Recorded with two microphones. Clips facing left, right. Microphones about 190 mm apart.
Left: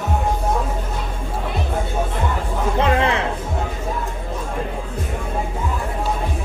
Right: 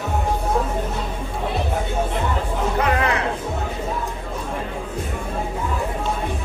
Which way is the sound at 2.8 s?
25° left (ahead or behind).